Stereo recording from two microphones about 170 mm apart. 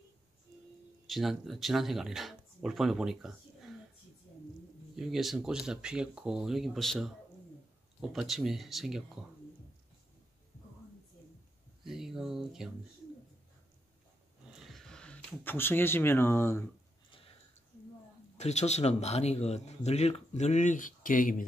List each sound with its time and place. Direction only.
1.0 s speech: centre (ahead or behind)
4.9 s speech: centre (ahead or behind)
11.8 s a sound: centre (ahead or behind)
14.5 s speech: centre (ahead or behind)
18.4 s speech: 40° left (ahead or behind)